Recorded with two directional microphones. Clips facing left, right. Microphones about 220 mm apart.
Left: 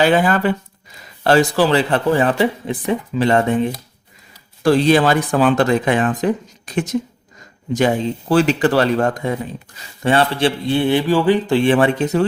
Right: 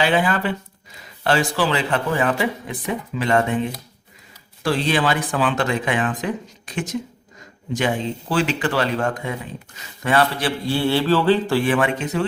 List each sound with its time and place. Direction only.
0.0 s speech: 45° left (ahead or behind)
4.6 s speech: 40° left (ahead or behind)
8.3 s speech: 40° left (ahead or behind)
10.0 s speech: 30° left (ahead or behind)